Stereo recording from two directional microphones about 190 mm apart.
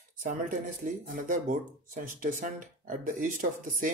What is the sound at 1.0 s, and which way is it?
Speech, 45° right (ahead or behind).